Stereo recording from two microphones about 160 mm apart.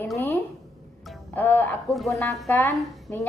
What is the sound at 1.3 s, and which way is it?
Speech, 10° left (ahead or behind).